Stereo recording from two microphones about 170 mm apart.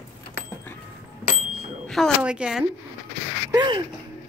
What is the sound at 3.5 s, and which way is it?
Speech, 25° right (ahead or behind).